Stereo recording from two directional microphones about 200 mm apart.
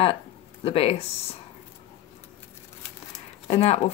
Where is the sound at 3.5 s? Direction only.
35° left (ahead or behind).